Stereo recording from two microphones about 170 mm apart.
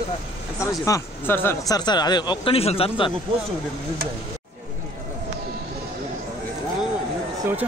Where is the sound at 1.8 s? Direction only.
25° left (ahead or behind).